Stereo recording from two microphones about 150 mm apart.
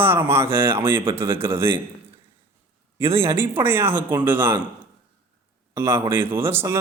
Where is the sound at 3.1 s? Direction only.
15° right (ahead or behind).